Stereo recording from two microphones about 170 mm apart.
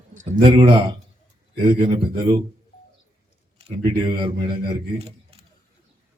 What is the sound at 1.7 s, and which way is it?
Speech, 30° right (ahead or behind).